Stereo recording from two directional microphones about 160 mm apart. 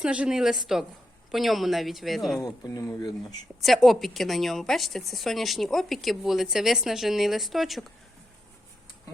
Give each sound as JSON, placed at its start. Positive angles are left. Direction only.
{"t": 0.0, "sound": "a woman's voice", "side_deg": -5}
{"t": 2.4, "sound": "speech", "side_deg": 20}
{"t": 3.6, "sound": "a woman's voice", "side_deg": 0}